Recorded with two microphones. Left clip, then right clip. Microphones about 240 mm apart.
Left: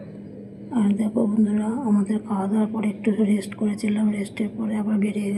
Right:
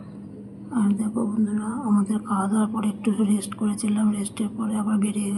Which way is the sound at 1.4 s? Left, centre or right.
Centre.